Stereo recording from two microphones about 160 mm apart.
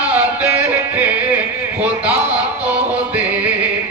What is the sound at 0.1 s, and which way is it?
Music, 10° right (ahead or behind).